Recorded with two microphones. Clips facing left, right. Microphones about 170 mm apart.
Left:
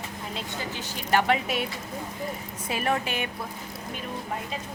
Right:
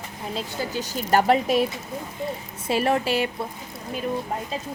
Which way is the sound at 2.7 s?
30° right (ahead or behind).